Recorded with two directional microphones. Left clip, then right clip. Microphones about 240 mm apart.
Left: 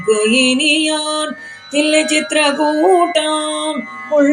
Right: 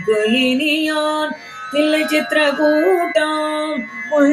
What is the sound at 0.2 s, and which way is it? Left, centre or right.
Music, left.